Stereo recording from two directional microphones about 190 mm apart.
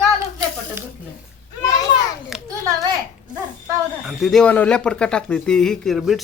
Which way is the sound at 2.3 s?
5° right (ahead or behind).